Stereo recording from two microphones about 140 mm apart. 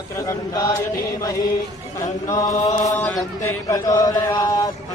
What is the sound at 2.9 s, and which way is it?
Speech, 5° left (ahead or behind).